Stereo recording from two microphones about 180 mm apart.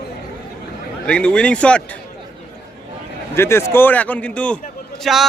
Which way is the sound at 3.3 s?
15° left (ahead or behind).